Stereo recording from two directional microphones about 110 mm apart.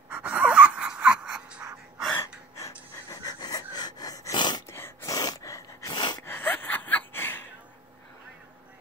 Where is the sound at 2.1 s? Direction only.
20° left (ahead or behind).